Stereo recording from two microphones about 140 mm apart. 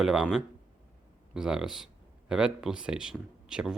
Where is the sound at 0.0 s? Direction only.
5° right (ahead or behind).